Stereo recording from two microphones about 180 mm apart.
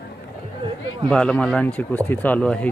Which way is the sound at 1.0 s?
5° left (ahead or behind).